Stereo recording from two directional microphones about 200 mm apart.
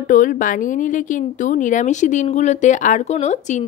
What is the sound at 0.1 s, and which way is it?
A woman's voice, 40° left (ahead or behind).